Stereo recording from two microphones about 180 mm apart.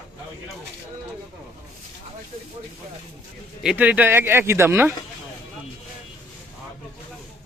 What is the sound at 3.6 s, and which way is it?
Speech, 10° right (ahead or behind).